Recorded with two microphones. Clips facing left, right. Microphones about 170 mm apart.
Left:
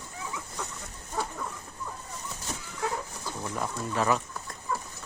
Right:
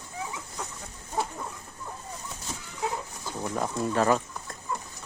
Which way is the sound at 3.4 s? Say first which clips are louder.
Right 5 dB; 45° right (ahead or behind).